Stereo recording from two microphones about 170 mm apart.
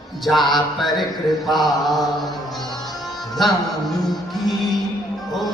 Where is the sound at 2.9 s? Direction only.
Centre (ahead or behind).